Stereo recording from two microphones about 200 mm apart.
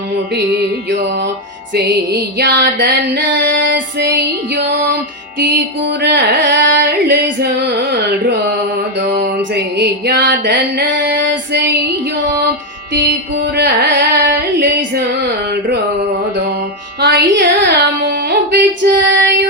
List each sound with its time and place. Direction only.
1.7 s music: 60° right (ahead or behind)
5.4 s music: 55° right (ahead or behind)
12.9 s carnatic music: 60° right (ahead or behind)
17.0 s a sound: 60° right (ahead or behind)